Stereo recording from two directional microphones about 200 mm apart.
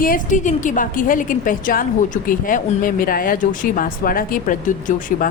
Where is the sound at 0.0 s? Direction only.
40° left (ahead or behind).